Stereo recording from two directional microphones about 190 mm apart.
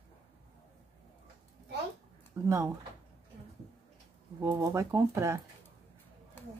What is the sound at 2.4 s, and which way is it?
Speech, 15° right (ahead or behind).